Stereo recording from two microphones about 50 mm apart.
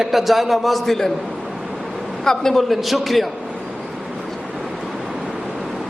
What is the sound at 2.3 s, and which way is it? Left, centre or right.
A man's voice, centre.